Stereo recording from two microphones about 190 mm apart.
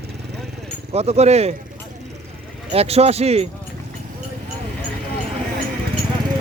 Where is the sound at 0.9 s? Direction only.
35° right (ahead or behind).